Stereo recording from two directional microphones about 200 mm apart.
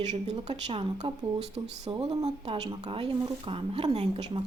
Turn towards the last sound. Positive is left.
turn(degrees=-25)  # may be behind; listen again after turning